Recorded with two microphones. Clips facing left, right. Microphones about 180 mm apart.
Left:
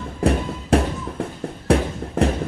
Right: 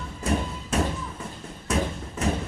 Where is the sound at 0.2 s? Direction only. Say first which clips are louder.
Left 7 dB; 60° left (ahead or behind).